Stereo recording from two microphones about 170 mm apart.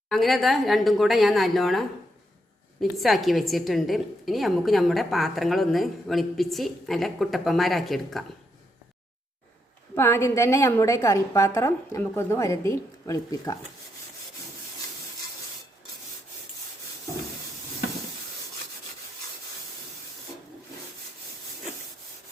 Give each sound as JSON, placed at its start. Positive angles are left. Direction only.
{"t": 0.1, "sound": "a woman's voice", "side_deg": 0}
{"t": 2.9, "sound": "a woman's voice", "side_deg": 0}
{"t": 9.9, "sound": "a woman's voice", "side_deg": 15}